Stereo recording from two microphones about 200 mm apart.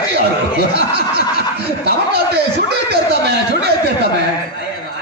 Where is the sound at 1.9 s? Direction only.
55° right (ahead or behind).